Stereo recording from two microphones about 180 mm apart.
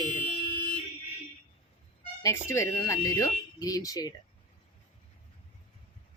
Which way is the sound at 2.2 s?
15° left (ahead or behind).